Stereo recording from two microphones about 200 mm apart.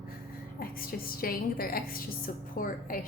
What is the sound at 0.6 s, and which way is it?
A woman's voice, 45° left (ahead or behind).